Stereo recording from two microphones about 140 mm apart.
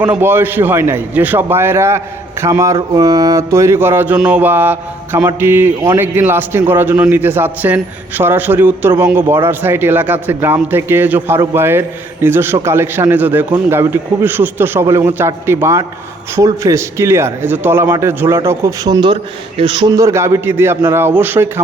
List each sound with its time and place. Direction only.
0.0 s speech: 15° right (ahead or behind)
2.7 s speech: 30° right (ahead or behind); by 21.6 s 15° right (ahead or behind)